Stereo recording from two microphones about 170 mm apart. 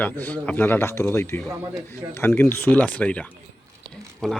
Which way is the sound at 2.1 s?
15° left (ahead or behind).